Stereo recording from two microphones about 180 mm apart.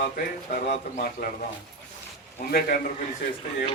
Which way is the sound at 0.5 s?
50° left (ahead or behind).